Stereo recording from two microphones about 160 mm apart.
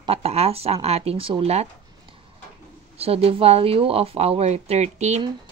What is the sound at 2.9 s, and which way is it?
Speech, 40° right (ahead or behind).